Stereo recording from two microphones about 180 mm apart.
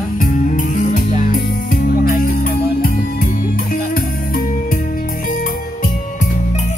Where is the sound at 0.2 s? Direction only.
45° left (ahead or behind).